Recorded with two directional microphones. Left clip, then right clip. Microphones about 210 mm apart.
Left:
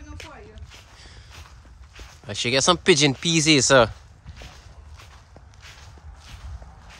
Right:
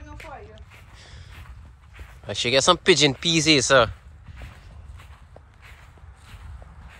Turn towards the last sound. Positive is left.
turn(degrees=5)  # may be behind; listen again after turning